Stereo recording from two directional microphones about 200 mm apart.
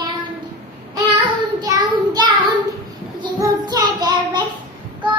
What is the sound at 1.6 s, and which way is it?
Child singing, 20° right (ahead or behind).